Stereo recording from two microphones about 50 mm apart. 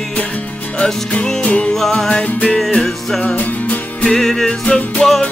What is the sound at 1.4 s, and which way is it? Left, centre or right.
Music, left.